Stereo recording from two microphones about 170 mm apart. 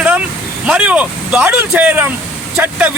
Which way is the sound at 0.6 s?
5° right (ahead or behind).